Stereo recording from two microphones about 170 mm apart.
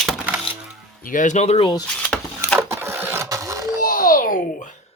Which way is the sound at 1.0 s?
50° left (ahead or behind).